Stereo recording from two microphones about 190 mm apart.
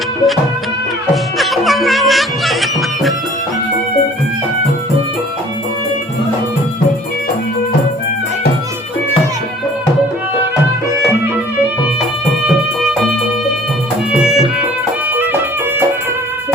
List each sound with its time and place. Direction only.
1.1 s music: centre (ahead or behind)
14.1 s music: 5° right (ahead or behind)